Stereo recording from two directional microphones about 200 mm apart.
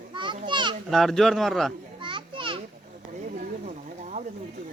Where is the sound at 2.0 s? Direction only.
25° right (ahead or behind).